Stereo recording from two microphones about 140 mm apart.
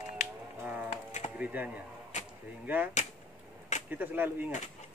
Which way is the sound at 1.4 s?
10° right (ahead or behind).